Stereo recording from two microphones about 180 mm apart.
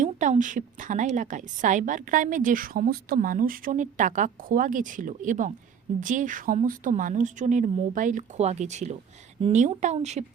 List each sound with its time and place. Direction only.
0.0 s a woman's voice: 45° right (ahead or behind)